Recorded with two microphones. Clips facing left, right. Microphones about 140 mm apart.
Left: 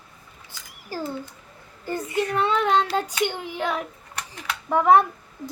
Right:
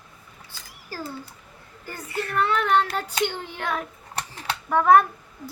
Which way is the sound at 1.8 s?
20° left (ahead or behind).